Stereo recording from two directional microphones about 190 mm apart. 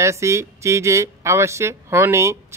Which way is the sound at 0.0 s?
15° right (ahead or behind).